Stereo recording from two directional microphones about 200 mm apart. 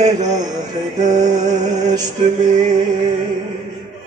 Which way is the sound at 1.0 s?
20° right (ahead or behind).